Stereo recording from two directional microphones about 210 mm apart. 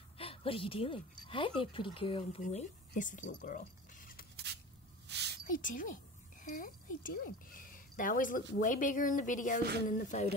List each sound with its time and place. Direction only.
0.2 s speech: 25° left (ahead or behind)
2.4 s speech: 35° left (ahead or behind)
5.0 s a sound: 55° right (ahead or behind)
5.4 s speech: 40° left (ahead or behind)